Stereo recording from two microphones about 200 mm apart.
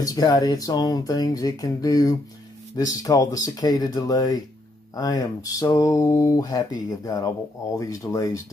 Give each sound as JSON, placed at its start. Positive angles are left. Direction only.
{"t": 0.0, "sound": "speech", "side_deg": 20}